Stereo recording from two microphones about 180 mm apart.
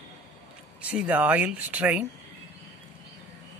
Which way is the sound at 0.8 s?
5° right (ahead or behind).